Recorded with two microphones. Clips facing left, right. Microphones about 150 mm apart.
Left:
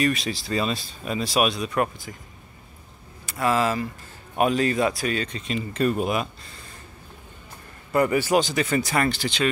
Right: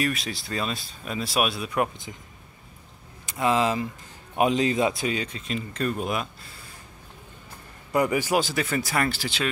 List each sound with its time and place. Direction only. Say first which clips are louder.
0.0 s speech: left 4 dB; centre (ahead or behind)
3.3 s speech: even; 20° right (ahead or behind); by 6.2 s 5° left (ahead or behind)
7.9 s speech: left 3 dB; 10° right (ahead or behind)